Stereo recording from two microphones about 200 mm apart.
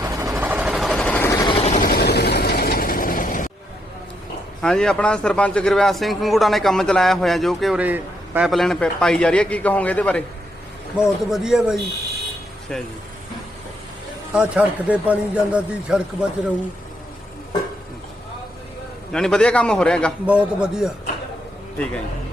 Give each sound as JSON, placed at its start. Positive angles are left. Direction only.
{"t": 0.0, "sound": "vehicle", "side_deg": -15}
{"t": 0.3, "sound": "vehicle", "side_deg": -5}
{"t": 1.5, "sound": "vehicle", "side_deg": 35}
{"t": 4.6, "sound": "a man's voice", "side_deg": 5}
{"t": 14.3, "sound": "speech", "side_deg": -5}
{"t": 19.1, "sound": "a man's voice", "side_deg": 5}